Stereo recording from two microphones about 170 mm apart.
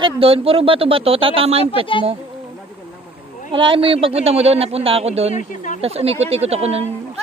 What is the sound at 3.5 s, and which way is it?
Speech, 30° right (ahead or behind).